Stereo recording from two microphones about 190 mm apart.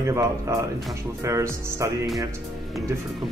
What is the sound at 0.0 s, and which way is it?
Speech, 15° right (ahead or behind).